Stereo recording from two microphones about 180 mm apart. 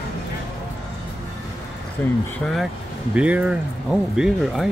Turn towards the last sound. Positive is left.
turn(degrees=0)  # may be behind; listen again after turning